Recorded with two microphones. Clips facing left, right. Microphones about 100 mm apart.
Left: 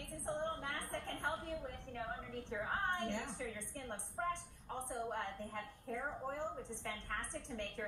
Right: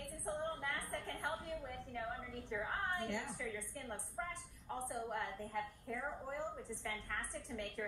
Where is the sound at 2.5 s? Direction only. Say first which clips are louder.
Left 1 dB; 30° left (ahead or behind).